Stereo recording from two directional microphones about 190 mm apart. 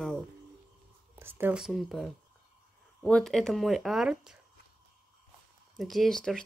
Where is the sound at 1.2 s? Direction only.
10° right (ahead or behind).